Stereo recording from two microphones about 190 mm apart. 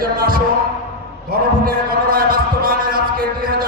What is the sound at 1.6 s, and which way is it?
Heart sounds, 50° right (ahead or behind).